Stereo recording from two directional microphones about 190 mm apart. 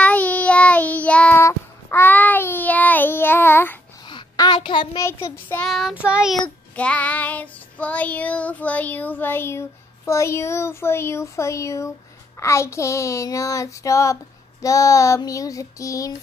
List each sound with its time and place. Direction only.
0.0 s child singing: 5° left (ahead or behind)
4.1 s a sound: 25° left (ahead or behind)
5.0 s child singing: 15° left (ahead or behind)
5.7 s child singing: centre (ahead or behind); by 16.2 s 15° left (ahead or behind)